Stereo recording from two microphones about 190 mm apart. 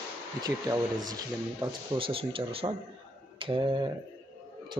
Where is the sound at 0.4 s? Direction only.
20° right (ahead or behind).